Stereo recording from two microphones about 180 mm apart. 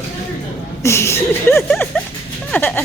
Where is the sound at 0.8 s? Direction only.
15° left (ahead or behind).